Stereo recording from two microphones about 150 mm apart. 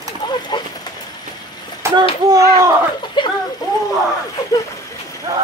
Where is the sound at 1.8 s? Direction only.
15° right (ahead or behind).